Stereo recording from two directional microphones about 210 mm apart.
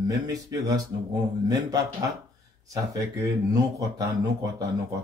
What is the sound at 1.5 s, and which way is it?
Speech, 15° right (ahead or behind).